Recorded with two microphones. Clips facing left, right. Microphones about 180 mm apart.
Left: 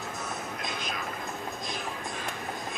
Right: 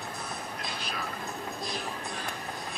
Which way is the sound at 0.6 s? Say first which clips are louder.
Left 2 dB; 35° right (ahead or behind).